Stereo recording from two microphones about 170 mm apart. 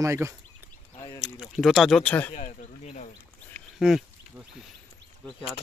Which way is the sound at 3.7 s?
5° right (ahead or behind).